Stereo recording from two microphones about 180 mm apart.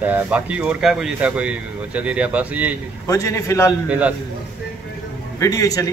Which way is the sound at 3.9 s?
5° right (ahead or behind).